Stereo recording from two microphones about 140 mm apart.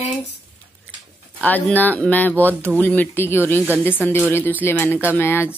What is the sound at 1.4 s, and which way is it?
A woman's voice, 10° left (ahead or behind).